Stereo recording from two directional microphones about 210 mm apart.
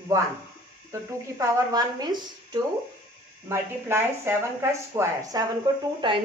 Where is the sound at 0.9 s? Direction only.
15° right (ahead or behind).